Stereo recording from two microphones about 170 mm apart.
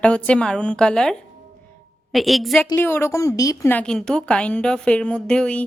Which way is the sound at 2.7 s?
15° left (ahead or behind).